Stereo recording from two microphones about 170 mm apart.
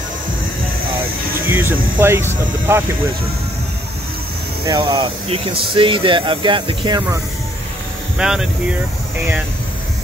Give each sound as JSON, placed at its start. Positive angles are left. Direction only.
{"t": 1.5, "sound": "speech", "side_deg": -10}
{"t": 4.6, "sound": "speech", "side_deg": -30}
{"t": 8.2, "sound": "speech", "side_deg": -5}